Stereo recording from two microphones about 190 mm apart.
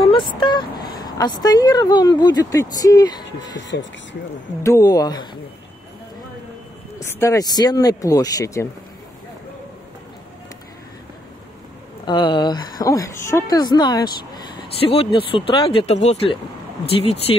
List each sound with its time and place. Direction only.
0.4 s a woman's voice: 25° left (ahead or behind)
3.3 s speech: 70° left (ahead or behind)
4.6 s a woman's voice: 15° left (ahead or behind)
7.0 s a woman's voice: 15° left (ahead or behind)
12.0 s a woman's voice: 25° left (ahead or behind)